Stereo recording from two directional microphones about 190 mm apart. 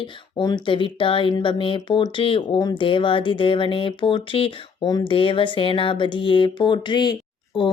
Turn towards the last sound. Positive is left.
turn(degrees=25)  # may be behind; listen again after turning